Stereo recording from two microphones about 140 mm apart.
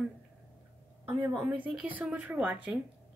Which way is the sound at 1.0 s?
15° right (ahead or behind).